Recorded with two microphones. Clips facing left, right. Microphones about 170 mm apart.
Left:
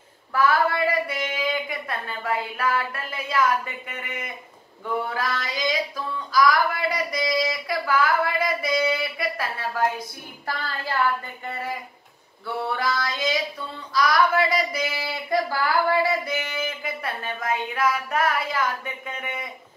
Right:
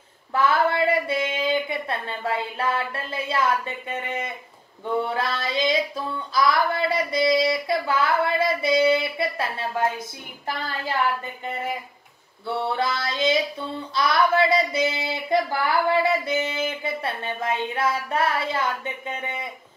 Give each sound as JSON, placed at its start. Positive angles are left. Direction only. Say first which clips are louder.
{"t": 0.3, "sound": "a woman's voice", "louder": "even", "side_deg": -25}
{"t": 5.0, "sound": "female singing", "louder": "right 2 dB", "side_deg": -30}
{"t": 11.4, "sound": "child singing", "louder": "right 3 dB", "side_deg": -20}